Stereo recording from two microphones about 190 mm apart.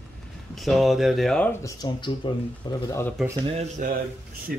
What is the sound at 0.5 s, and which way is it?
Speech, centre (ahead or behind).